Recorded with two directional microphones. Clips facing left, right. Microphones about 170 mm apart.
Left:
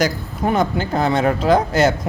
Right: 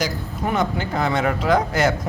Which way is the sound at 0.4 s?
30° left (ahead or behind).